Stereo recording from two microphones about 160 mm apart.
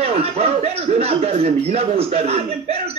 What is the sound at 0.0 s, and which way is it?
Speech, 40° right (ahead or behind).